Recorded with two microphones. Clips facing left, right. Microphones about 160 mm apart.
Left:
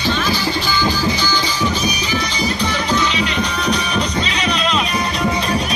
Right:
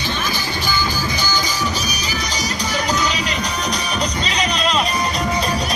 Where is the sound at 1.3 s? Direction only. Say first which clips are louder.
Left 3 dB; 40° right (ahead or behind).